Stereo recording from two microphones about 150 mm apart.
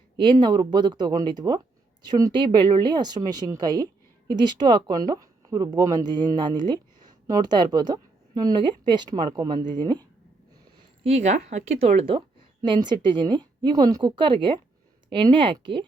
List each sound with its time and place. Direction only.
0.2 s speech: 30° right (ahead or behind)
11.0 s a woman's voice: 50° right (ahead or behind); by 15.9 s 30° right (ahead or behind)